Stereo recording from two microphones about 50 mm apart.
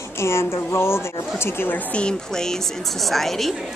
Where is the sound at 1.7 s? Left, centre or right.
Left.